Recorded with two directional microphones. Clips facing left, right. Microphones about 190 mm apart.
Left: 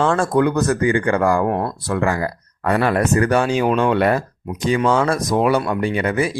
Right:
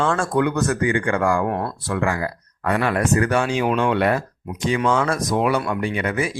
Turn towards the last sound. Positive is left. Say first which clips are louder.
# left 4 dB
turn(degrees=35)  # may be behind; listen again after turning